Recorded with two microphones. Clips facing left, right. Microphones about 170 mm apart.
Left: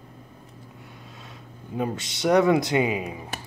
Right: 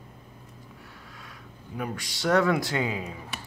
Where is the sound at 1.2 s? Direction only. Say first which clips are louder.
Left 4 dB; 25° left (ahead or behind).